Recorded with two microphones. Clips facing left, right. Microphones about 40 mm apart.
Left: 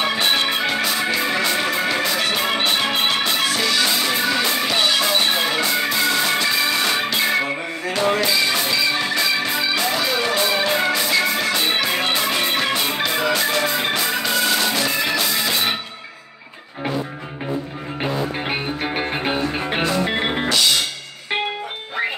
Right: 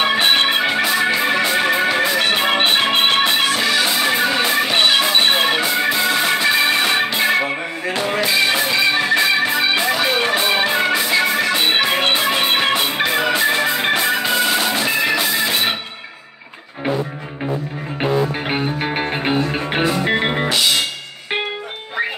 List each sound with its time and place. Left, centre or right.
0.0 s music: right
0.7 s music: right
2.1 s music: right
3.5 s music: right
4.7 s music: right
5.6 s music: right
6.5 s music: right
11.0 s music: centre
11.5 s music: right
13.3 s music: right
13.7 s music: right
14.2 s music: right
18.0 s music: centre